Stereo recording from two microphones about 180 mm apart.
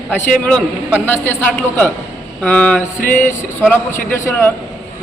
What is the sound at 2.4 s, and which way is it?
A man's voice, 10° left (ahead or behind).